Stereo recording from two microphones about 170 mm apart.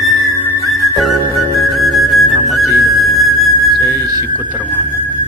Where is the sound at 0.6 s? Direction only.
Centre (ahead or behind).